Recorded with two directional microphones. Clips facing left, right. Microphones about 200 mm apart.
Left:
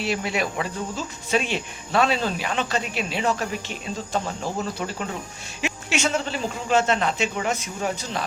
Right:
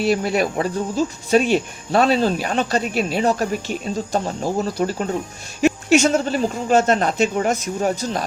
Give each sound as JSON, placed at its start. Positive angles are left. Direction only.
{"t": 0.0, "sound": "speech", "side_deg": -40}